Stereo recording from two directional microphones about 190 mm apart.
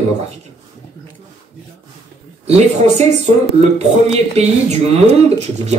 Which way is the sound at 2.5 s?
35° right (ahead or behind).